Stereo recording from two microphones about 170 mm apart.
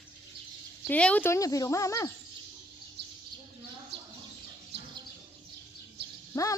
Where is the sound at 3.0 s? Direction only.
80° right.